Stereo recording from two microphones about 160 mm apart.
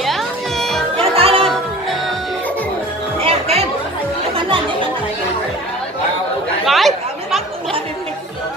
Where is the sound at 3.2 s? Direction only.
40° right (ahead or behind).